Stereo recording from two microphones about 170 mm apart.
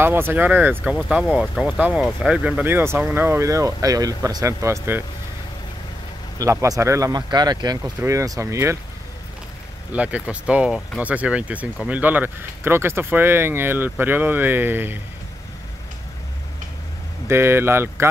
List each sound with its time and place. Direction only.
0.0 s speech: 15° right (ahead or behind)
6.3 s speech: 20° right (ahead or behind)
9.9 s speech: 10° right (ahead or behind)
17.3 s speech: 15° right (ahead or behind)